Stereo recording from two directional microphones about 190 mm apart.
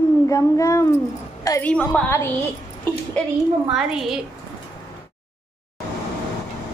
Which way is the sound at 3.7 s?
Centre (ahead or behind).